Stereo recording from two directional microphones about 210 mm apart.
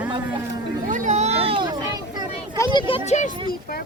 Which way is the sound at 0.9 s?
35° right (ahead or behind).